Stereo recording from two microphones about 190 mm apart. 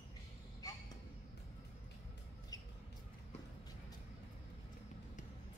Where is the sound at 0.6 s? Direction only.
20° left (ahead or behind).